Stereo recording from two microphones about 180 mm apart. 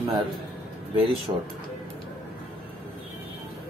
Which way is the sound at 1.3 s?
25° right (ahead or behind).